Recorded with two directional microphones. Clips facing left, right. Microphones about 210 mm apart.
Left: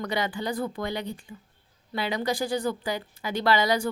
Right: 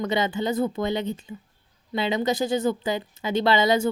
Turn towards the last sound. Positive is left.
turn(degrees=-25)  # may be behind; listen again after turning